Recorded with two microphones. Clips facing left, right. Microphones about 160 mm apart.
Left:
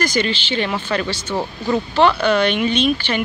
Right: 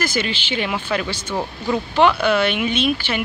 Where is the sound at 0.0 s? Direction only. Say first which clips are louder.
Left 3 dB; 5° right (ahead or behind).